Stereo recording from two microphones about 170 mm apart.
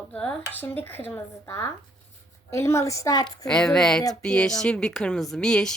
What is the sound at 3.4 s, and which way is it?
A woman's voice, 5° left (ahead or behind).